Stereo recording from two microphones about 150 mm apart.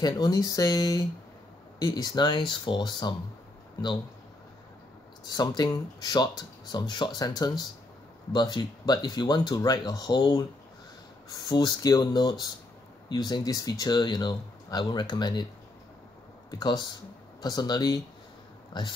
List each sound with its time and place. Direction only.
0.0 s speech: 25° left (ahead or behind)
5.2 s speech: 25° left (ahead or behind)
11.4 s speech: 30° left (ahead or behind)
16.4 s speech: 30° left (ahead or behind)